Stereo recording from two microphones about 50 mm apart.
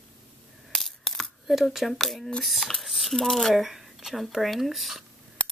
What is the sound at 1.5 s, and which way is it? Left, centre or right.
Speech, centre.